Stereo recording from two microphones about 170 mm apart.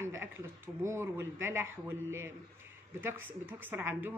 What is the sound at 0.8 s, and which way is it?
Speech, 15° right (ahead or behind).